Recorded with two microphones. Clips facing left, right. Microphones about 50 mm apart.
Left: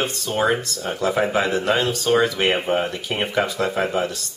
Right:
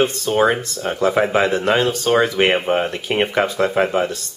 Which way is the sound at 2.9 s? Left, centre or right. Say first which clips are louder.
Right 5 dB; right.